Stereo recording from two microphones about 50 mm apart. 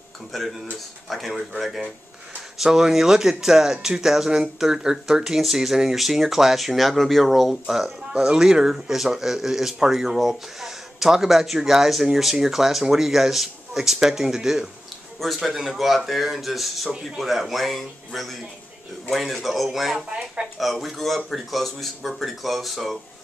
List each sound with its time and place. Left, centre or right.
0.3 s speech: centre
20.1 s speech: centre
20.5 s speech: centre